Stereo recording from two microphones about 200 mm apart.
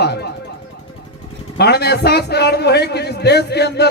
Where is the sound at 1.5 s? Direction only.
55° left (ahead or behind).